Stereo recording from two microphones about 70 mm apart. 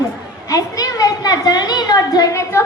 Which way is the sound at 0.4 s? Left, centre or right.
Left.